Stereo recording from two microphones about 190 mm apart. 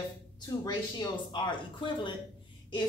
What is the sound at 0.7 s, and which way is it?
Speech, 25° left (ahead or behind).